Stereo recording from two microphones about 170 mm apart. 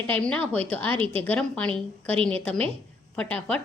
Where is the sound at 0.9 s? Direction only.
35° right (ahead or behind).